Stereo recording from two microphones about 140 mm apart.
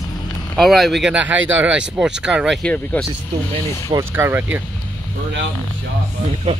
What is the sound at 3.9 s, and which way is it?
Speech, 20° right (ahead or behind).